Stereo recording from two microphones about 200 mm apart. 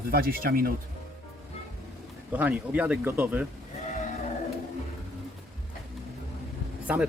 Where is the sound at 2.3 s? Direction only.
10° right (ahead or behind).